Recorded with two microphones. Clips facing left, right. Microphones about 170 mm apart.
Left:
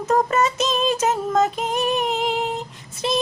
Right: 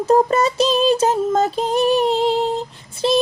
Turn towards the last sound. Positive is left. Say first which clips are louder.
# right 6 dB
turn(degrees=-30)  # may be behind; listen again after turning